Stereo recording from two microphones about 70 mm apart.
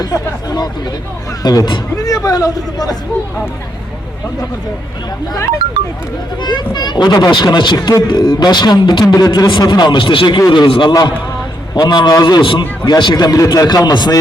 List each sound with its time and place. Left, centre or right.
0.0 s a man's voice: left
6.4 s a man's voice: left